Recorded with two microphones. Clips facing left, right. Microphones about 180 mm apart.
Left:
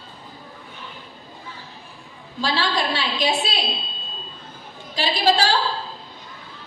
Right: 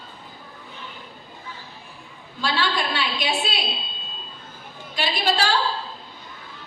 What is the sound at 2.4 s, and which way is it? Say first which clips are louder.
A woman's voice: left 2 dB; 35° left (ahead or behind).